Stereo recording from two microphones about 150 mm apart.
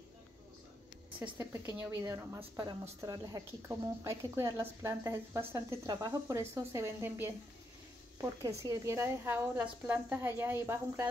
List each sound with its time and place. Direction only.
1.2 s a woman's voice: 15° right (ahead or behind)